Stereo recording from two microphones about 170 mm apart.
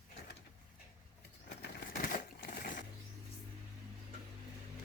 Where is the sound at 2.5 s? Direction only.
50° left (ahead or behind).